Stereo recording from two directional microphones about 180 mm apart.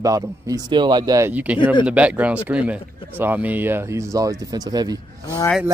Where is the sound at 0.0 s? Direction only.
20° right (ahead or behind).